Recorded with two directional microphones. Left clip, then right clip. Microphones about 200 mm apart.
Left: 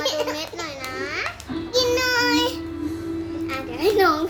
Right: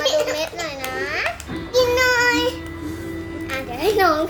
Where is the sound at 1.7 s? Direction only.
25° left (ahead or behind); by 2.5 s 40° left (ahead or behind).